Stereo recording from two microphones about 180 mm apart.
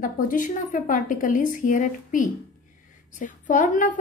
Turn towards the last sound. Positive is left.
turn(degrees=45)  # may be behind; listen again after turning